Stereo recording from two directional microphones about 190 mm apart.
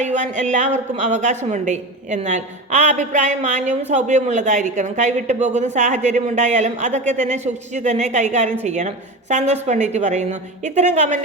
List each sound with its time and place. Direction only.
0.0 s speech: 40° right (ahead or behind)